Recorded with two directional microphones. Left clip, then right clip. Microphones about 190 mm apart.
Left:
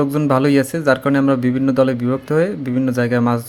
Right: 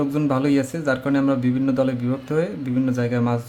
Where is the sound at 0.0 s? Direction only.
25° left (ahead or behind).